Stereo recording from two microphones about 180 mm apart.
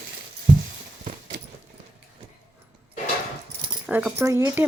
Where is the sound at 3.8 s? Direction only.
10° right (ahead or behind).